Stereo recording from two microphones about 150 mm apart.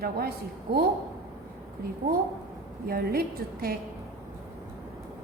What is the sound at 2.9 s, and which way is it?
Speech, 90° right.